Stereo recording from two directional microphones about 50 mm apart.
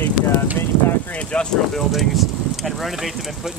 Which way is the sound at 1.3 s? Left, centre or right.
Left.